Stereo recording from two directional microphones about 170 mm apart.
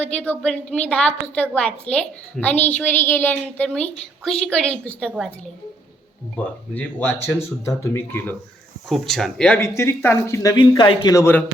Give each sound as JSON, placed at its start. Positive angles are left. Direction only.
{"t": 0.0, "sound": "a woman's voice", "side_deg": 10}
{"t": 6.3, "sound": "a woman's voice", "side_deg": 10}
{"t": 8.9, "sound": "speech", "side_deg": 0}
{"t": 9.6, "sound": "a woman's voice", "side_deg": 15}